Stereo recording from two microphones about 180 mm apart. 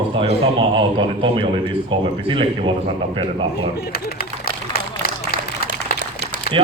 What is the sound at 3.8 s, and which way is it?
Speech, 60° left (ahead or behind).